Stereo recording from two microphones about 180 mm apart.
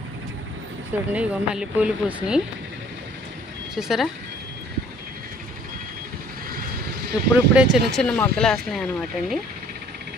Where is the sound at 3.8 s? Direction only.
Centre (ahead or behind).